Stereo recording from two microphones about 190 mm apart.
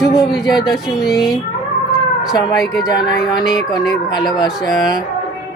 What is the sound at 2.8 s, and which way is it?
Speech, 20° left (ahead or behind).